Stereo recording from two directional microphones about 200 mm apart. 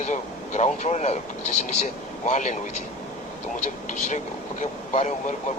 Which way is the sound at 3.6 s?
40° left (ahead or behind).